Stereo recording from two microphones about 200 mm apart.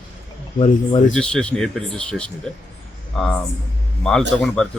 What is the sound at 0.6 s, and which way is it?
Speech, 35° left (ahead or behind).